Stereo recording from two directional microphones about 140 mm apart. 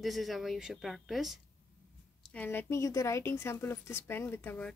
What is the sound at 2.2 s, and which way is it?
A woman's voice, 10° left (ahead or behind).